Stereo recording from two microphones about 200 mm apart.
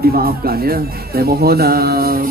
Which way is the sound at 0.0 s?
50° right (ahead or behind).